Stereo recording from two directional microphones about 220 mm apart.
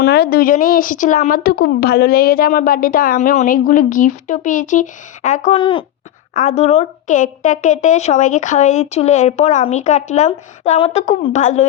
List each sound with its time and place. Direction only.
0.0 s speech: 45° left (ahead or behind)